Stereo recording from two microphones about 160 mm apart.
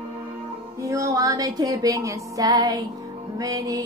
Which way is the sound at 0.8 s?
20° right (ahead or behind).